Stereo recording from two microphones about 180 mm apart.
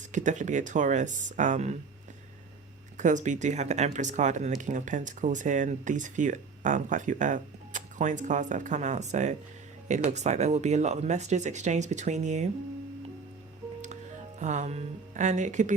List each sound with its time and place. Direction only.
0.1 s speech: 45° right (ahead or behind)
3.0 s speech: 45° right (ahead or behind)
13.8 s speech: 40° right (ahead or behind)